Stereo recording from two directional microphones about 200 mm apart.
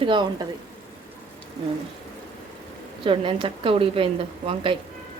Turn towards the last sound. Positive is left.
turn(degrees=-25)  # may be behind; listen again after turning